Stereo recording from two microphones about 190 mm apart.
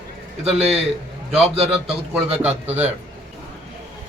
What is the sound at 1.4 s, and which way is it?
Speech, 35° right (ahead or behind).